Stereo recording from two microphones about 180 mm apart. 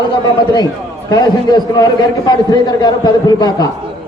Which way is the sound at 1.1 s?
20° left (ahead or behind).